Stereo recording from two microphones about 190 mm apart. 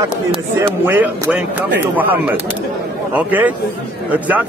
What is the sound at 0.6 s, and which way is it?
A man's voice, 10° right (ahead or behind).